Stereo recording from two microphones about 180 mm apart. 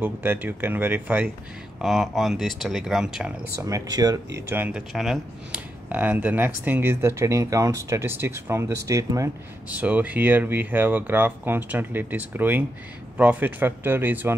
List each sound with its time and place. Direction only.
0.0 s speech: 10° right (ahead or behind)
3.6 s speech: 20° right (ahead or behind)
4.5 s speech: 10° right (ahead or behind)